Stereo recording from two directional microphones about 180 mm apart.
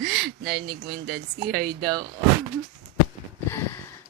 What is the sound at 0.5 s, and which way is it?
Speech, 65° right (ahead or behind).